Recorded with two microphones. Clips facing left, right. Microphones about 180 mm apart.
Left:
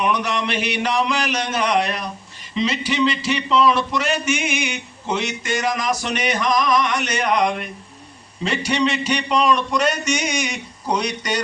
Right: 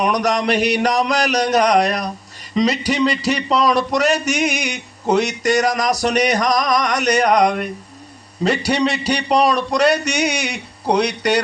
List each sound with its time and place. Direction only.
0.0 s speech: 40° right (ahead or behind)
10.0 s a man's voice: 65° right (ahead or behind)